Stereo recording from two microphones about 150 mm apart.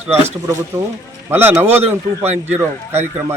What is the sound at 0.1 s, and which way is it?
Speech, 45° right (ahead or behind).